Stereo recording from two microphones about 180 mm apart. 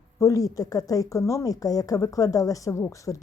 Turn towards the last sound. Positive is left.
turn(degrees=20)  # may be behind; listen again after turning